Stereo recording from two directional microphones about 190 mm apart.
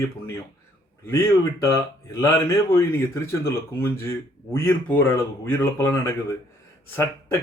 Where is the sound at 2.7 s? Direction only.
15° left (ahead or behind).